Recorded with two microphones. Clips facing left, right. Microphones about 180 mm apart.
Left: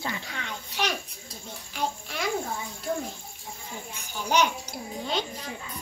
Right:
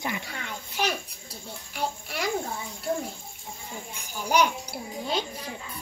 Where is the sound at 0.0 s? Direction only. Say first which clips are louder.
Right 1 dB; 15° right (ahead or behind).